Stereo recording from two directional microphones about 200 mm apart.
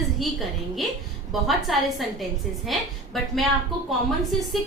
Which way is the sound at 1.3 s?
Centre (ahead or behind).